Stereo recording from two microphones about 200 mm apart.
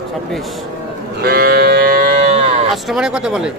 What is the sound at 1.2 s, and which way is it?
Livestock, 50° right (ahead or behind).